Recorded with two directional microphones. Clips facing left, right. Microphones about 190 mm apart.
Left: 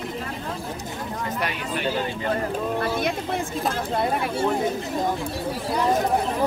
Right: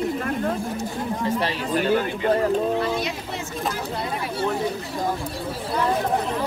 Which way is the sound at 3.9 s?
50° left (ahead or behind).